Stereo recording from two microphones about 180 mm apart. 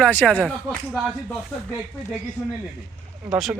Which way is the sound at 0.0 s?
10° left (ahead or behind).